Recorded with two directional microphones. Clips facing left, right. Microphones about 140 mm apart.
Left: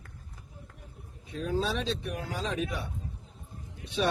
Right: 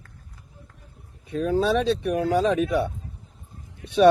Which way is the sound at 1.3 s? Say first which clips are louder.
Right 9 dB; 65° right (ahead or behind).